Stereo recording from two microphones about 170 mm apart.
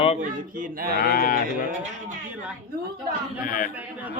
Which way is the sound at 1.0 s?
55° left (ahead or behind).